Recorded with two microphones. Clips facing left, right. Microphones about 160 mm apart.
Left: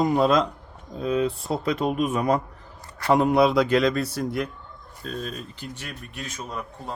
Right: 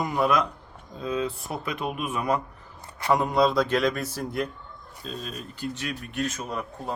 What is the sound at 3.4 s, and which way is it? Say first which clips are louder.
Speech: left 3 dB; 10° left (ahead or behind).